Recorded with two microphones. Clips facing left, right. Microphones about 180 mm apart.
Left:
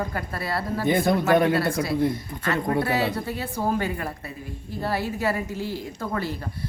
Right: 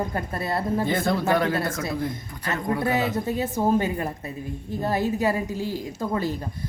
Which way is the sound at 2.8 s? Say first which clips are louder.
Right 1 dB; 20° right (ahead or behind).